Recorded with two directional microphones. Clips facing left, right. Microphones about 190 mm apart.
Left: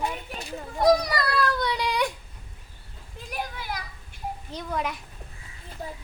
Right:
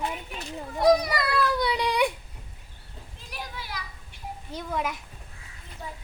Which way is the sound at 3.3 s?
50° left (ahead or behind).